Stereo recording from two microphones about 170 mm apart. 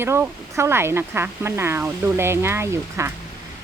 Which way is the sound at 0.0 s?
15° right (ahead or behind).